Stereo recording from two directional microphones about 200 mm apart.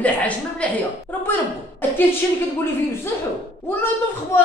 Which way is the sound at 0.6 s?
5° left (ahead or behind).